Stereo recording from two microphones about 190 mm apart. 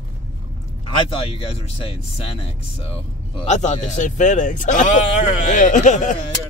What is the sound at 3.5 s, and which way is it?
Speech, 40° left (ahead or behind).